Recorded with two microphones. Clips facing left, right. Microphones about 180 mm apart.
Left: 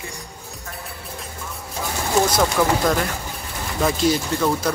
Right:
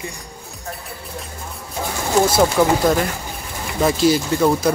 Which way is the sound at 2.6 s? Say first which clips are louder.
Right 3 dB; 15° right (ahead or behind).